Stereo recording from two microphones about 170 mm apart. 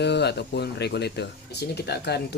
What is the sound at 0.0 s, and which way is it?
Speech, 80° left.